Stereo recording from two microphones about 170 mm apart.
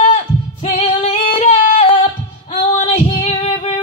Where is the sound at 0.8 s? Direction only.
35° left (ahead or behind).